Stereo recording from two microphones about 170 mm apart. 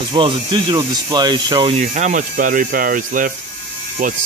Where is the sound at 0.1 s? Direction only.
30° right (ahead or behind).